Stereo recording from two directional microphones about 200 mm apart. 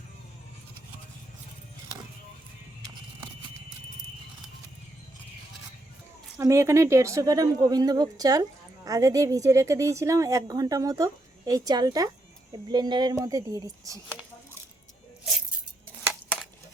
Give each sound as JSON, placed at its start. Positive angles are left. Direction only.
{"t": 6.4, "sound": "speech", "side_deg": -15}